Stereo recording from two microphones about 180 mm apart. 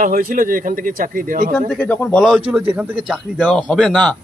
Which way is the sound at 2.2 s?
5° right (ahead or behind).